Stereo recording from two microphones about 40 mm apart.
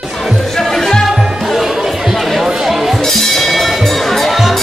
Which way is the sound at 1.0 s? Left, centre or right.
Centre.